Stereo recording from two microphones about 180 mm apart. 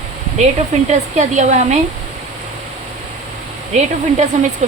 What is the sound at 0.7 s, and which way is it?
Speech, 40° right (ahead or behind).